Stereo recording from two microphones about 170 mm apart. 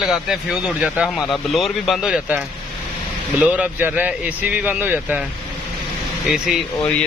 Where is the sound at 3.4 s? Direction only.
5° right (ahead or behind).